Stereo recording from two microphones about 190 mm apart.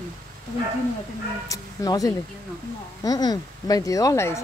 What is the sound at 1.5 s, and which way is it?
A woman's voice, 20° left (ahead or behind).